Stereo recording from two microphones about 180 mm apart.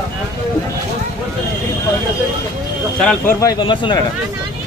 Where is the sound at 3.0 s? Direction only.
5° left (ahead or behind).